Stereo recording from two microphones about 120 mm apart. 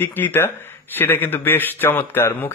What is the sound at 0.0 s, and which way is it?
A man's voice, 20° left (ahead or behind).